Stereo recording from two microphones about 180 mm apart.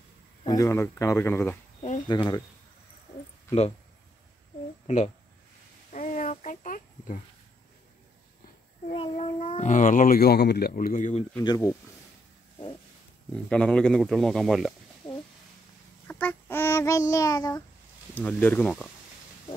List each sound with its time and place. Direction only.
0.5 s speech: 15° left (ahead or behind)
4.8 s speech: 40° left (ahead or behind)
5.9 s a sound: 45° left (ahead or behind)
8.9 s a child's voice: 30° left (ahead or behind)
11.4 s speech: 20° left (ahead or behind)
13.5 s speech: 5° left (ahead or behind)
16.1 s child singing: 10° left (ahead or behind)
18.1 s speech: 10° left (ahead or behind)